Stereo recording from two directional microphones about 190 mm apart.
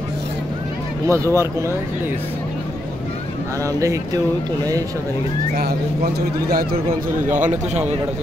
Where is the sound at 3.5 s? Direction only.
15° right (ahead or behind).